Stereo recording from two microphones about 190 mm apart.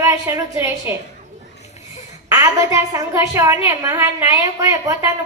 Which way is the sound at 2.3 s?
15° right (ahead or behind).